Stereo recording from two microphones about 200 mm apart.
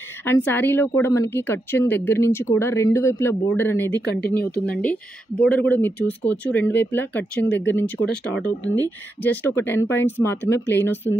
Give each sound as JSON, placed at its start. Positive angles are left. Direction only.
{"t": 0.2, "sound": "speech", "side_deg": 10}
{"t": 4.0, "sound": "speech", "side_deg": 55}
{"t": 5.4, "sound": "speech", "side_deg": 10}